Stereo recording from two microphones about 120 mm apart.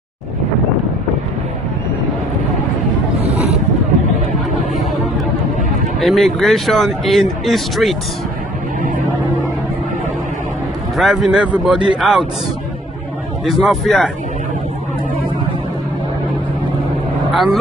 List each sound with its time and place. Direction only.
3.2 s a sound: 60° right (ahead or behind)
5.9 s a man's voice: centre (ahead or behind)
11.0 s a man's voice: 5° right (ahead or behind)
13.5 s a man's voice: centre (ahead or behind)
17.3 s speech: centre (ahead or behind)